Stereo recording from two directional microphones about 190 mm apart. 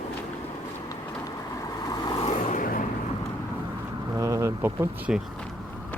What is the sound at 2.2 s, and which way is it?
Vehicle, 40° left (ahead or behind).